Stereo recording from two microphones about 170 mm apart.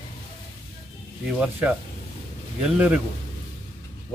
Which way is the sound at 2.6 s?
5° right (ahead or behind).